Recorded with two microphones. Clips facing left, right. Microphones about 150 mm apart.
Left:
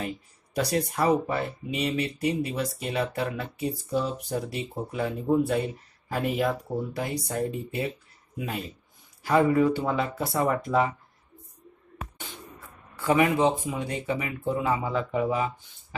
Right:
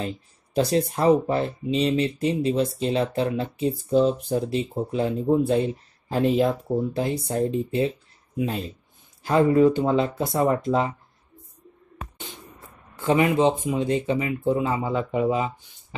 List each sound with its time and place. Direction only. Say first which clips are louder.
0.6 s speech: right 4 dB; 25° right (ahead or behind)
13.0 s speech: right 2 dB; 25° right (ahead or behind)